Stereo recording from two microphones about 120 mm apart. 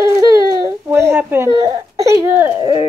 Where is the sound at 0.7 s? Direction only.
20° right (ahead or behind).